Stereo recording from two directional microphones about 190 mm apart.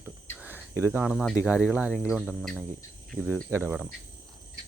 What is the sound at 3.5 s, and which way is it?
Speech, 10° right (ahead or behind).